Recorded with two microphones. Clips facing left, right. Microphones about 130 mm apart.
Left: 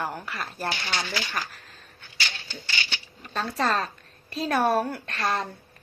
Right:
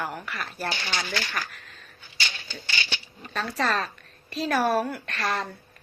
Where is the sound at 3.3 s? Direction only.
25° left (ahead or behind).